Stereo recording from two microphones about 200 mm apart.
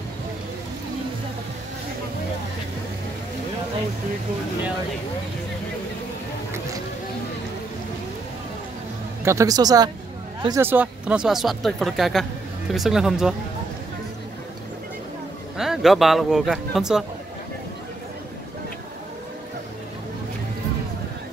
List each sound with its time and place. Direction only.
9.2 s speech: 15° right (ahead or behind)
15.5 s speech: centre (ahead or behind)